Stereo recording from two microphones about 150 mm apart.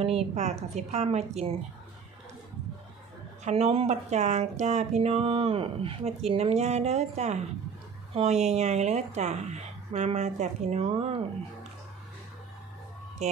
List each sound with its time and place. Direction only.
0.3 s speech: 50° right (ahead or behind)
3.4 s speech: 45° right (ahead or behind)
13.2 s a sound: 45° right (ahead or behind)